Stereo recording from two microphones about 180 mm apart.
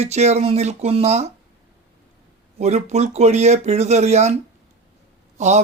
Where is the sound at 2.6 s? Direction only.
35° right (ahead or behind).